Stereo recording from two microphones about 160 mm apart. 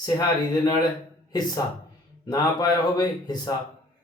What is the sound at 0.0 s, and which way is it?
Speech, 25° left (ahead or behind).